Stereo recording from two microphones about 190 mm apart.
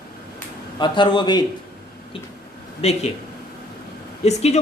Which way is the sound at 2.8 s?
35° left (ahead or behind).